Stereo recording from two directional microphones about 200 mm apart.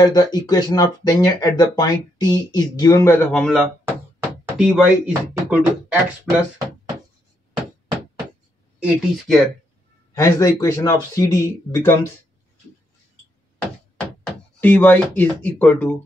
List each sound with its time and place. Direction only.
0.0 s speech: 20° left (ahead or behind); by 3.6 s 5° left (ahead or behind)
3.8 s knock: 10° right (ahead or behind)
5.3 s beatboxing: 10° right (ahead or behind)
8.7 s speech: 5° right (ahead or behind)
10.1 s speech: 15° left (ahead or behind)
13.9 s speech: 5° left (ahead or behind)